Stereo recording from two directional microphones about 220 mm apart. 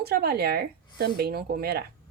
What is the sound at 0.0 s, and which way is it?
A woman's voice, 45° right (ahead or behind).